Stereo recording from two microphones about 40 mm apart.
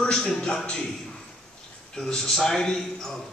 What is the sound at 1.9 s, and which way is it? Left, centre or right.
Speech, centre.